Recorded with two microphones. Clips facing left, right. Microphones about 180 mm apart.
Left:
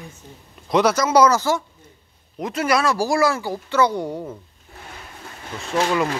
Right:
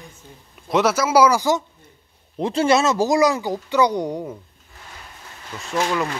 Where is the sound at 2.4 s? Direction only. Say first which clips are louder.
Right 3 dB; 30° right (ahead or behind).